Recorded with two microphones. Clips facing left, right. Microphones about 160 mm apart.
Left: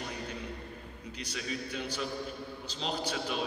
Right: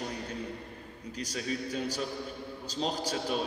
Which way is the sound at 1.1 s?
40° right (ahead or behind).